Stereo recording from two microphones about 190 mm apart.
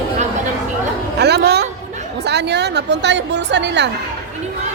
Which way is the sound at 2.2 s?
60° right (ahead or behind).